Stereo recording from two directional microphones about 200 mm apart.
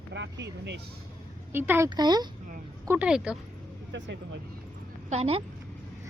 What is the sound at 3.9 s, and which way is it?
Speech, 65° right (ahead or behind).